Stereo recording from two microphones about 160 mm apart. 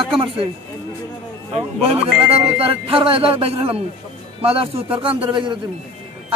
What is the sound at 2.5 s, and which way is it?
A man's voice, 35° right (ahead or behind).